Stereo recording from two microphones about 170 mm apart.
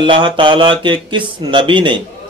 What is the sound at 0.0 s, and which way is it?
Speech, 30° right (ahead or behind).